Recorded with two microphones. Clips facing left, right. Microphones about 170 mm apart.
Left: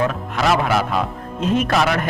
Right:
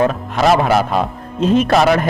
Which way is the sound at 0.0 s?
40° right (ahead or behind).